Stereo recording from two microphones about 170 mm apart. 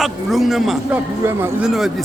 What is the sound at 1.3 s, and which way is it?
Speech, 15° right (ahead or behind).